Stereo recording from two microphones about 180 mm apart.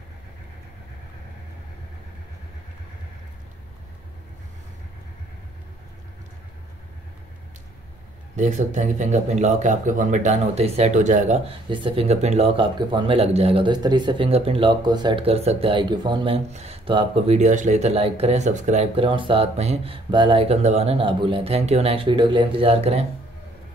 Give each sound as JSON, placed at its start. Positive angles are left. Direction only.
{"t": 8.4, "sound": "speech", "side_deg": -40}
{"t": 11.7, "sound": "speech", "side_deg": -30}
{"t": 16.4, "sound": "speech", "side_deg": -35}